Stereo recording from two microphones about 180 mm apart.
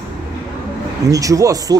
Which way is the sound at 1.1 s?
20° right (ahead or behind).